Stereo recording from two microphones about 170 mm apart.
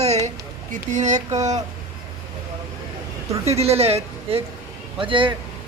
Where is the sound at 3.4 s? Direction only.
40° right (ahead or behind).